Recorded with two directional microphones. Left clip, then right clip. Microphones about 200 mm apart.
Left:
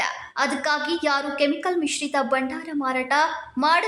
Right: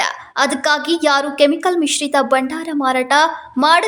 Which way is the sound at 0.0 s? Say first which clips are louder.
Right 7 dB; 40° right (ahead or behind).